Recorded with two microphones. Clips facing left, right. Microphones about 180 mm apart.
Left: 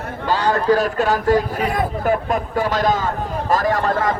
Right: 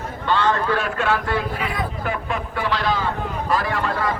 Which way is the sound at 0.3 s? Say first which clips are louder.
Left 3 dB; 40° left (ahead or behind).